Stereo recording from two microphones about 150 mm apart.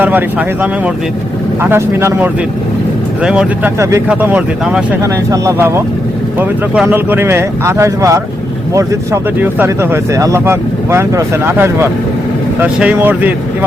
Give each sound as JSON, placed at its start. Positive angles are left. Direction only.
{"t": 0.0, "sound": "speech", "side_deg": -10}
{"t": 5.3, "sound": "speech", "side_deg": -20}